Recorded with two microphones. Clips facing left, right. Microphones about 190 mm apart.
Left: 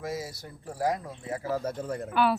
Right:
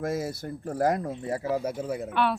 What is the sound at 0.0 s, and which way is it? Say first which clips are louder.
Speech: right 5 dB; 55° right (ahead or behind).